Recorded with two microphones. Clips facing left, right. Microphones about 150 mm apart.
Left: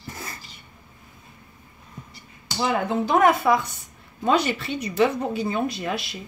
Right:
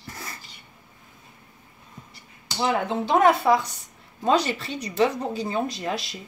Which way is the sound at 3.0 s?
30° right (ahead or behind).